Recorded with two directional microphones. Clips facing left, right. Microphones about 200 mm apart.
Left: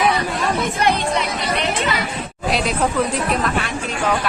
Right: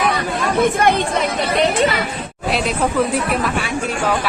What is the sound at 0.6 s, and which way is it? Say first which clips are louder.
Speech: right 8 dB; 55° right (ahead or behind).